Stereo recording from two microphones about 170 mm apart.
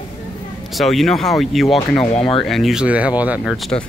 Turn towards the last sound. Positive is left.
turn(degrees=0)  # may be behind; listen again after turning